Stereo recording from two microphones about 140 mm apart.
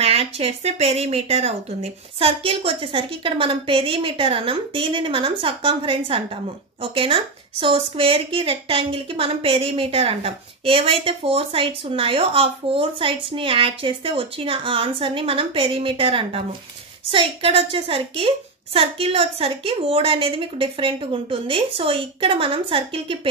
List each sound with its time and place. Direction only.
0.0 s a woman's voice: 45° right (ahead or behind)